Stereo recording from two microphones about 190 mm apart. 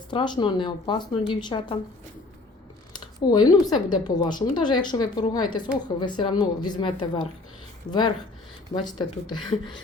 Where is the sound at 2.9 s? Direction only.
20° left (ahead or behind).